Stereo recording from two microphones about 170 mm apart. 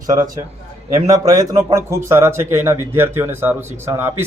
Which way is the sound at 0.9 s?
20° right (ahead or behind).